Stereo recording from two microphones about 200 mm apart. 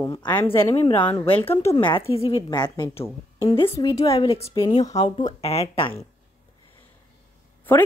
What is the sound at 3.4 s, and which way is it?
A woman's voice, 25° left (ahead or behind).